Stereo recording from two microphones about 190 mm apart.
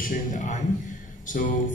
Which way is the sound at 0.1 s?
40° left (ahead or behind).